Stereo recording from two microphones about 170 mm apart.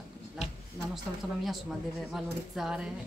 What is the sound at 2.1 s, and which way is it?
Speech, centre (ahead or behind).